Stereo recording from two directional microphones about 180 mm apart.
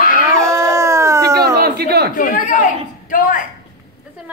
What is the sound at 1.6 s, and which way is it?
Speech, 65° right (ahead or behind).